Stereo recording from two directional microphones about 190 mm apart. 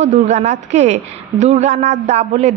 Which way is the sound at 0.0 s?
35° right (ahead or behind).